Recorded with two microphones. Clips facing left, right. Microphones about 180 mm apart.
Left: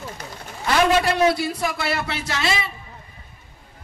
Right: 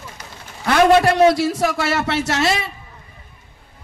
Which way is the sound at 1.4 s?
90° right.